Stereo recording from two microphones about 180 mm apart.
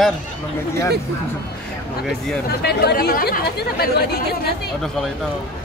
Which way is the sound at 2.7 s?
60° left (ahead or behind).